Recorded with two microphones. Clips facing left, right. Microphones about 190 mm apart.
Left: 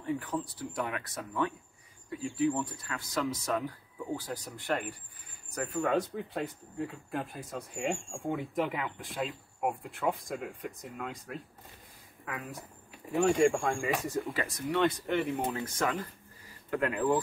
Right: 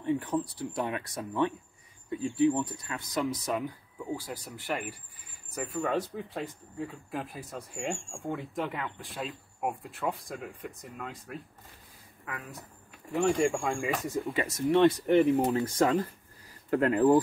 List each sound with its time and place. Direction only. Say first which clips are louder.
0.0 s a sound: right 4 dB; 25° right (ahead or behind)
0.6 s speech: right 3 dB; 25° right (ahead or behind); by 14.3 s 5° right (ahead or behind)
14.3 s speech: right 6 dB; 25° right (ahead or behind); by 17.2 s 40° right (ahead or behind)